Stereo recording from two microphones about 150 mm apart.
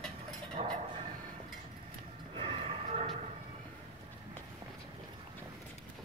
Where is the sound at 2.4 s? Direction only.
45° right (ahead or behind).